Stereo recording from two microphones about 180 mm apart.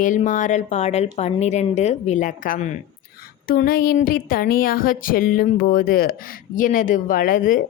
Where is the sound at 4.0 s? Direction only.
50° left (ahead or behind).